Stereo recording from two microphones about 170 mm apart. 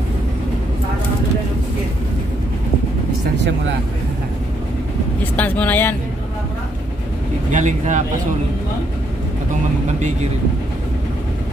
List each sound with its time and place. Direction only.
5.3 s vehicle: 10° left (ahead or behind)
7.5 s speech: 45° right (ahead or behind)